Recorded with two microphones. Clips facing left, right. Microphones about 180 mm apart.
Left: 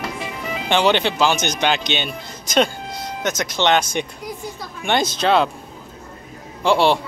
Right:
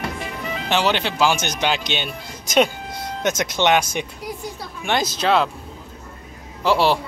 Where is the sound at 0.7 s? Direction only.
5° right (ahead or behind).